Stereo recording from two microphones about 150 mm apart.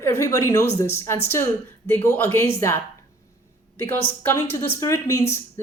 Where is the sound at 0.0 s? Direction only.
15° left (ahead or behind).